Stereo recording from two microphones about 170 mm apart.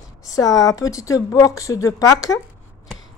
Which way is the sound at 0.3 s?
20° left (ahead or behind).